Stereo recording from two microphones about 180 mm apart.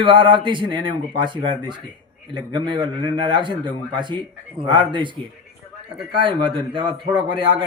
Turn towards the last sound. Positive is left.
turn(degrees=-25)  # may be behind; listen again after turning